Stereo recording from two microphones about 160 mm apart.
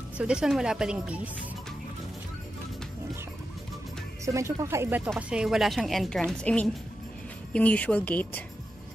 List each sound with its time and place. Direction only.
0.2 s a woman's voice: 5° right (ahead or behind)
4.3 s a woman's voice: 20° right (ahead or behind); by 8.5 s 10° left (ahead or behind)